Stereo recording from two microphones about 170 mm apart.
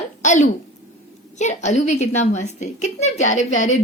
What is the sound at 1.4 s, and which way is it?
A woman's voice, 45° left (ahead or behind).